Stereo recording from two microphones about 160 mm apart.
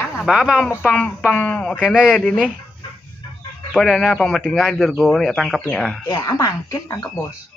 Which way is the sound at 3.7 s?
Centre (ahead or behind).